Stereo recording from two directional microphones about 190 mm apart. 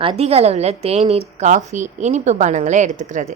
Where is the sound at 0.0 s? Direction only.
30° right (ahead or behind).